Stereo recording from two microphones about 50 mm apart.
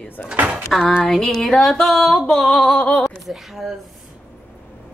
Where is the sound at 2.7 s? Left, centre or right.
Centre.